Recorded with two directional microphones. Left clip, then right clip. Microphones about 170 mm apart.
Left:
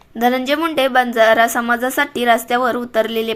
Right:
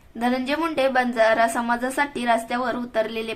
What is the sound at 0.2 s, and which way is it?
A woman's voice, 25° left (ahead or behind).